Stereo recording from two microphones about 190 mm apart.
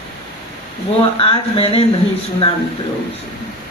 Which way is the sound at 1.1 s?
30° left (ahead or behind).